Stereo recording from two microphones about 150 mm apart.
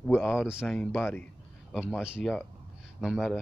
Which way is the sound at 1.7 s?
Centre (ahead or behind).